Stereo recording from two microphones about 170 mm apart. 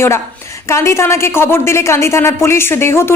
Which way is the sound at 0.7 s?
15° left (ahead or behind).